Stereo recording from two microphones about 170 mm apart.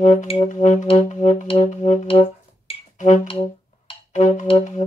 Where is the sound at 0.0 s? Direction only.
50° left (ahead or behind).